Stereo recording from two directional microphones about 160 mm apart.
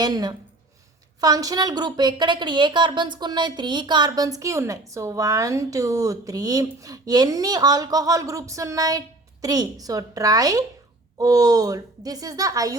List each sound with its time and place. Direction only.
0.0 s a woman's voice: 25° right (ahead or behind)